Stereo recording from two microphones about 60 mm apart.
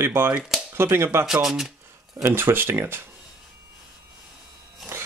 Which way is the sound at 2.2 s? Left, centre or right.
Right.